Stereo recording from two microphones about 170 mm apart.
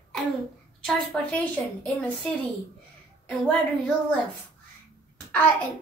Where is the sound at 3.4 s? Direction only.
5° left (ahead or behind).